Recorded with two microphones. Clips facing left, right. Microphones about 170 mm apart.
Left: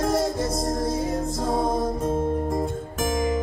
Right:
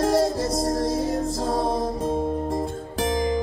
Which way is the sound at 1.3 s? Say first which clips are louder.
Even; 30° right (ahead or behind).